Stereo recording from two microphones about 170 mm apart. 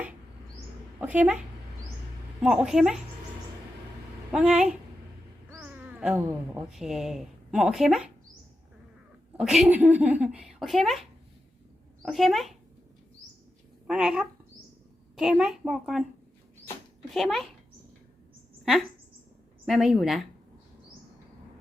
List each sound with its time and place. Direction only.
0.9 s speech: 10° right (ahead or behind)
2.4 s speech: 5° right (ahead or behind)
4.3 s speech: 5° right (ahead or behind)
5.6 s a sound: 10° right (ahead or behind)
6.7 s speech: centre (ahead or behind)
9.4 s speech: centre (ahead or behind)
12.0 s speech: centre (ahead or behind)
13.8 s speech: 5° right (ahead or behind)
17.1 s speech: centre (ahead or behind)
19.6 s speech: centre (ahead or behind)